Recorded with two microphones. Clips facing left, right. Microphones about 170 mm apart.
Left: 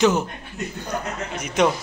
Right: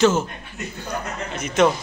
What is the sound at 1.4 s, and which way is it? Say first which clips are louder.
Speech: right 2 dB; 10° left (ahead or behind).